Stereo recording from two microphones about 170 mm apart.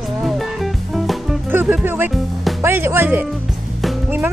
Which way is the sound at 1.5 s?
10° right (ahead or behind).